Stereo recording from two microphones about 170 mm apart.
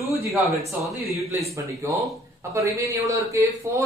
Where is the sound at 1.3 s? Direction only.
15° right (ahead or behind).